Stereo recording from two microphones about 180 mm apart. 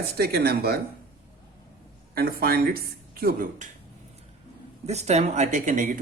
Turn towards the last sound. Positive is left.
turn(degrees=-45)  # may be behind; listen again after turning